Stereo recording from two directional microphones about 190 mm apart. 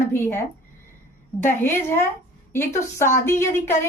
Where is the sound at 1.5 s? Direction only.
10° left (ahead or behind).